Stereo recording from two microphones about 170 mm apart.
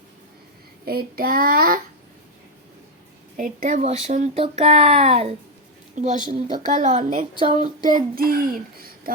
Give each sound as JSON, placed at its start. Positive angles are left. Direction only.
{"t": 0.9, "sound": "a child's voice", "side_deg": -60}
{"t": 3.3, "sound": "a child's voice", "side_deg": -50}
{"t": 6.0, "sound": "a woman's voice", "side_deg": -50}
{"t": 7.3, "sound": "a sound", "side_deg": -30}
{"t": 7.8, "sound": "a child's voice", "side_deg": -50}